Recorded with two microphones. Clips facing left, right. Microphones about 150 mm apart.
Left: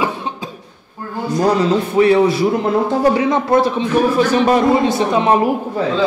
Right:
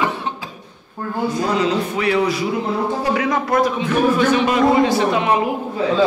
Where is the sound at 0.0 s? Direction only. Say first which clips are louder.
Left 1 dB; 15° left (ahead or behind).